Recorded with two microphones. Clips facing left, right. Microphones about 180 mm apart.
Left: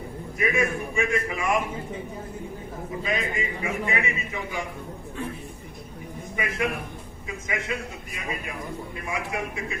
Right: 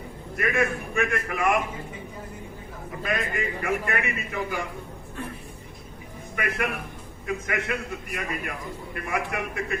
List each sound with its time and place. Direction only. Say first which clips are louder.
0.4 s a man's voice: even; 60° right (ahead or behind)
3.0 s a man's voice: right 1 dB; 60° right (ahead or behind)
6.3 s a man's voice: even; 60° right (ahead or behind)